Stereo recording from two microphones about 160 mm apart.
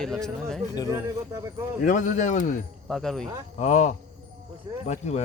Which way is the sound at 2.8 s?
Centre (ahead or behind).